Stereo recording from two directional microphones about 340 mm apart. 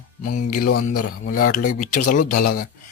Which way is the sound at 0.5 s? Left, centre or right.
Left.